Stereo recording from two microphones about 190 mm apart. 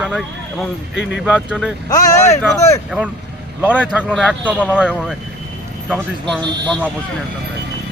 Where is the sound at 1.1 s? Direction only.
5° right (ahead or behind).